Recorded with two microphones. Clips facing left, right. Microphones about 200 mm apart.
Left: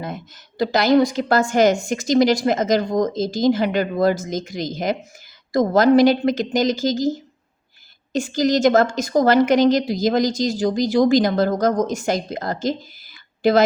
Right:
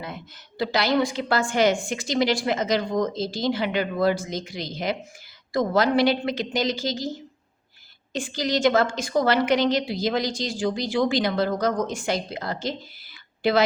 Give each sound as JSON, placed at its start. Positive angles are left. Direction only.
{"t": 0.6, "sound": "a woman's voice", "side_deg": 45}
{"t": 8.1, "sound": "a woman's voice", "side_deg": 45}